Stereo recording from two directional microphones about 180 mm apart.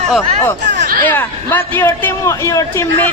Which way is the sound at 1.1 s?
10° left (ahead or behind).